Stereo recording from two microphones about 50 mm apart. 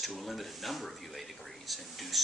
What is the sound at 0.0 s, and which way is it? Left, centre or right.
Speech, centre.